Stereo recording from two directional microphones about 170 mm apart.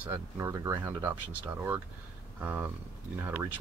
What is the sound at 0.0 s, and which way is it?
Speech, 15° right (ahead or behind).